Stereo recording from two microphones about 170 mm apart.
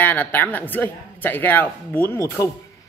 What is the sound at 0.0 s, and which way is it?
Speech, 10° left (ahead or behind).